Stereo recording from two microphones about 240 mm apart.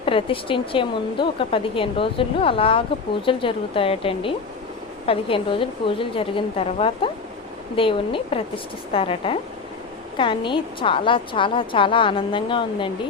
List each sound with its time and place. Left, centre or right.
0.0 s speech: left